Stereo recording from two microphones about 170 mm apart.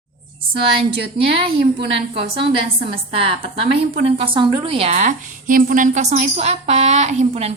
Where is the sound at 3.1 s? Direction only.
35° right (ahead or behind).